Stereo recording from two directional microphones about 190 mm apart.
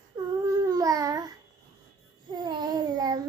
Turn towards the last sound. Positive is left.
turn(degrees=-20)  # may be behind; listen again after turning